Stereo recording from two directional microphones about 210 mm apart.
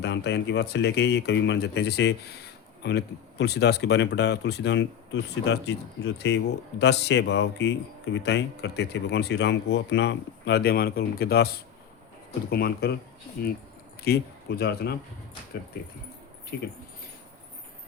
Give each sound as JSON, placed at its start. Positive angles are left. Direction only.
{"t": 0.0, "sound": "speech", "side_deg": 55}
{"t": 14.0, "sound": "speech", "side_deg": 50}